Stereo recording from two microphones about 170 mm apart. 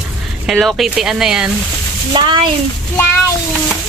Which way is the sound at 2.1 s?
30° right (ahead or behind).